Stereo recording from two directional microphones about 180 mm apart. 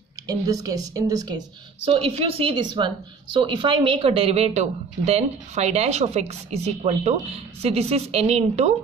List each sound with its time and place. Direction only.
0.3 s speech: 20° right (ahead or behind)
1.9 s a woman's voice: 35° right (ahead or behind)